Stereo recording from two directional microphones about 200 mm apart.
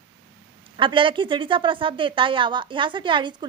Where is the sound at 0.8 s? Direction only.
25° right (ahead or behind).